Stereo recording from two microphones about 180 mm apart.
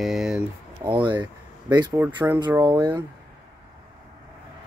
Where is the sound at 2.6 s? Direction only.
25° right (ahead or behind).